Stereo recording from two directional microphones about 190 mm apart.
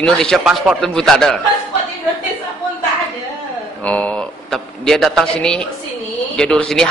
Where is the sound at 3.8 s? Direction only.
5° left (ahead or behind).